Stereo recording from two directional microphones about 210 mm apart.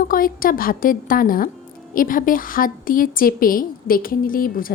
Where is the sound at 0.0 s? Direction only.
40° left (ahead or behind).